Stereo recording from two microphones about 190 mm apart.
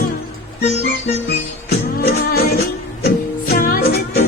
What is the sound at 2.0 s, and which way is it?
Music, 55° left (ahead or behind).